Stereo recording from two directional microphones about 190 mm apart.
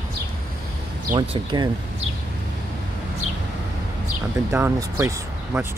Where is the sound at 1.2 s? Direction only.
20° right (ahead or behind).